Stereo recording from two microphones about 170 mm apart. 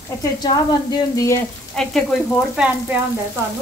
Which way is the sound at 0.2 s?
20° left (ahead or behind).